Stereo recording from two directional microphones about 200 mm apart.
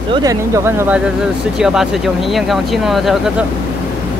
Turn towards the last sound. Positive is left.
turn(degrees=0)  # may be behind; listen again after turning